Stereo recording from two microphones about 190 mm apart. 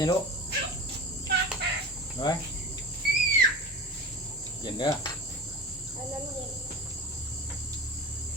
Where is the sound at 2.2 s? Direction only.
20° left (ahead or behind).